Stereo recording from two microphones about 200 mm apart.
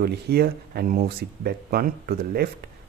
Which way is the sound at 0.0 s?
50° right (ahead or behind).